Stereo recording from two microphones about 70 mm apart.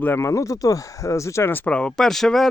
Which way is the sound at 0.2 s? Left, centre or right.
Left.